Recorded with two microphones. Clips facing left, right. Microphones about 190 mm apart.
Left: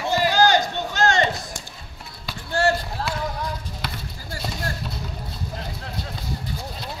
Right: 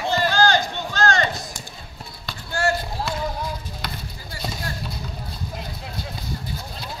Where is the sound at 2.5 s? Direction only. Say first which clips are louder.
Left 2 dB; 30° left (ahead or behind).